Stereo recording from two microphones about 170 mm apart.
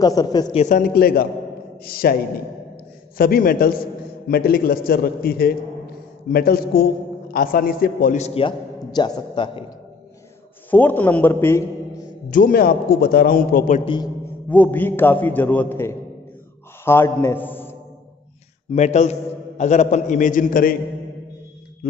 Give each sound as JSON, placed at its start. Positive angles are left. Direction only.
{"t": 0.0, "sound": "a man's voice", "side_deg": 25}
{"t": 0.6, "sound": "a man's voice", "side_deg": 50}
{"t": 2.7, "sound": "a sound", "side_deg": 60}
{"t": 4.3, "sound": "a man's voice", "side_deg": 60}
{"t": 8.2, "sound": "a man's voice", "side_deg": 30}
{"t": 10.7, "sound": "a man's voice", "side_deg": 10}
{"t": 12.3, "sound": "a man's voice", "side_deg": 55}
{"t": 14.5, "sound": "a man's voice", "side_deg": 10}
{"t": 18.7, "sound": "a man's voice", "side_deg": 45}